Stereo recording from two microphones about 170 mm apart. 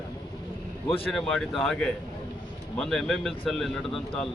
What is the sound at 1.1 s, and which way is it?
A man's voice, 5° left (ahead or behind).